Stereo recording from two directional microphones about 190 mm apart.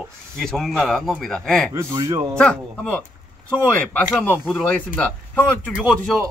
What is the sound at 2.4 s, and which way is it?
Speech, 5° left (ahead or behind).